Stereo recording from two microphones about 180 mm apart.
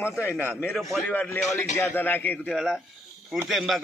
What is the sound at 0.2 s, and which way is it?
A man's voice, 15° left (ahead or behind).